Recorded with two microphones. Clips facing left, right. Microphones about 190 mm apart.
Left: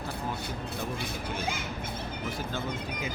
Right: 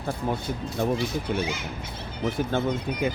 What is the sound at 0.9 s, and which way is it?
Speech, 55° left (ahead or behind).